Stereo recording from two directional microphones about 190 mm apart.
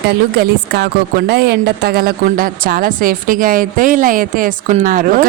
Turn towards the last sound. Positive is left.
turn(degrees=-45)  # may be behind; listen again after turning